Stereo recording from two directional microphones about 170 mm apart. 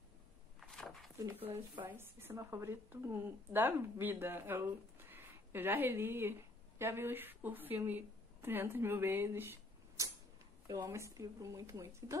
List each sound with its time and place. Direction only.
0.6 s a sound: centre (ahead or behind)
1.1 s speech: 15° right (ahead or behind)
1.4 s speech: 35° right (ahead or behind)
1.9 s a woman's voice: 15° right (ahead or behind)